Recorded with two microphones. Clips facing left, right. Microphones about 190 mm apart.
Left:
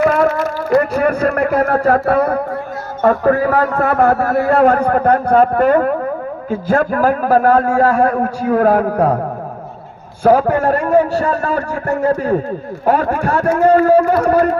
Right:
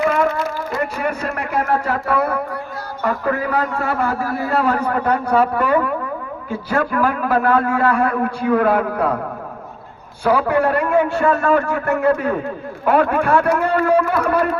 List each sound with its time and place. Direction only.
0.0 s a sound: 45° left (ahead or behind)
0.9 s a man's voice: 55° left (ahead or behind)
10.2 s a man's voice: 50° left (ahead or behind)